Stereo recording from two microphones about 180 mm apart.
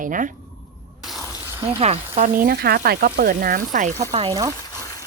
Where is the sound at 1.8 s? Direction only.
35° right (ahead or behind).